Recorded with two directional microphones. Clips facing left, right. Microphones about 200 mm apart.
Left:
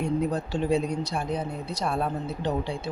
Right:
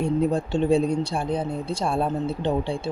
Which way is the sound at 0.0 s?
30° right (ahead or behind).